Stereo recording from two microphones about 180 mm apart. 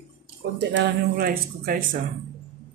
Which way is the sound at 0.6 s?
75° right (ahead or behind).